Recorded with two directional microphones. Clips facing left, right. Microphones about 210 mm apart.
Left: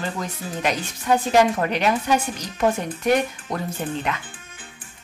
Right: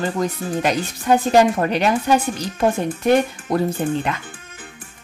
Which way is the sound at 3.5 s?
35° right (ahead or behind).